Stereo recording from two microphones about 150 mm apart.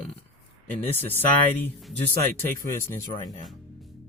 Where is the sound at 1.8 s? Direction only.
Centre (ahead or behind).